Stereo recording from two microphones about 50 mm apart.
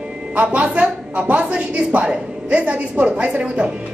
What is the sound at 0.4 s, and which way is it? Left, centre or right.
Speech, right.